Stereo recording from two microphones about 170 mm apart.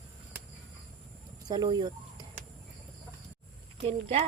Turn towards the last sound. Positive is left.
turn(degrees=-35)  # may be behind; listen again after turning